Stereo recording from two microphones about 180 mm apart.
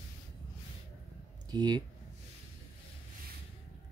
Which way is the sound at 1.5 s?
25° right (ahead or behind).